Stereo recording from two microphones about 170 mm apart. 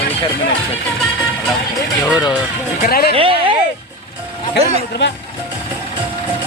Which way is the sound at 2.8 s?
65° left (ahead or behind).